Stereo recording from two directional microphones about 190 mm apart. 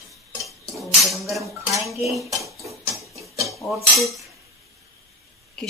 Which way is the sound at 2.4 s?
15° right (ahead or behind).